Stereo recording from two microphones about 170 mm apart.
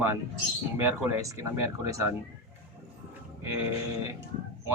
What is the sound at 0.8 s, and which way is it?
Speech, 15° right (ahead or behind).